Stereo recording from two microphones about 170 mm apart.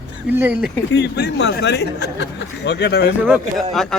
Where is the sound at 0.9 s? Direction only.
80° left.